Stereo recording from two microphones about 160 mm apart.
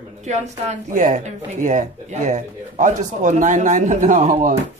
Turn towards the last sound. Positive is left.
turn(degrees=-55)  # may be behind; listen again after turning